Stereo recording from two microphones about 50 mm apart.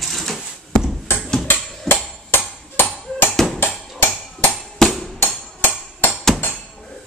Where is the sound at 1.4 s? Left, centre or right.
Left.